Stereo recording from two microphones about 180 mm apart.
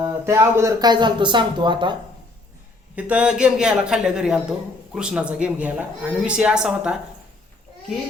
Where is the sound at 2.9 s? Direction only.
5° right (ahead or behind).